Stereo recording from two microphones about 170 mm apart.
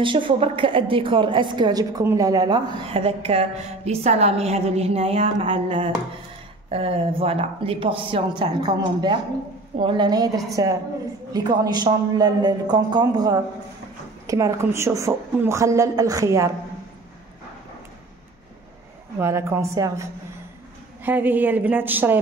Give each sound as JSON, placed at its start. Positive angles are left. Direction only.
{"t": 0.0, "sound": "a woman's voice", "side_deg": -30}
{"t": 19.1, "sound": "a woman's voice", "side_deg": -15}